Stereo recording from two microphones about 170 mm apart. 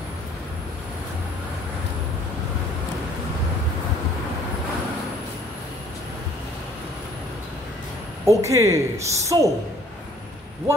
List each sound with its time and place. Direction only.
8.3 s speech: 15° right (ahead or behind)